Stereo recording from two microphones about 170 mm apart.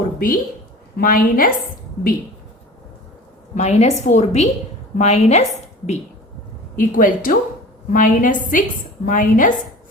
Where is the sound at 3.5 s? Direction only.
40° left (ahead or behind).